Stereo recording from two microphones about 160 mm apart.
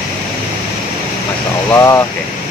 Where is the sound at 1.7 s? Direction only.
15° left (ahead or behind).